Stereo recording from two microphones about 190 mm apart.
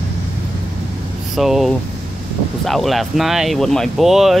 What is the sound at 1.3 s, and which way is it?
Speech, centre (ahead or behind).